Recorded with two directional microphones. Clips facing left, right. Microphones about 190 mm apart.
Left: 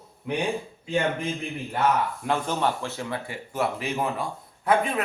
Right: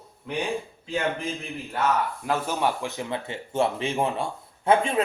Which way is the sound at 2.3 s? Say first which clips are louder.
Even; 10° right (ahead or behind).